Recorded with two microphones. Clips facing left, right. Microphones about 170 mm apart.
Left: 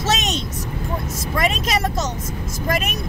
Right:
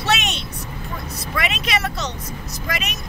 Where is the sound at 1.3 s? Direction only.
40° left (ahead or behind).